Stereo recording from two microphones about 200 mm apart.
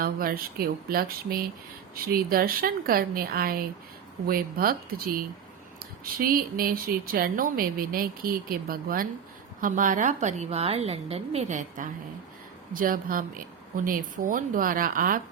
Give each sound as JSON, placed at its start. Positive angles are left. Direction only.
{"t": 0.0, "sound": "a woman's voice", "side_deg": -45}